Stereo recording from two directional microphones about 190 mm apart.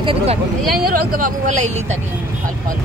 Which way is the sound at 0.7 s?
50° right (ahead or behind).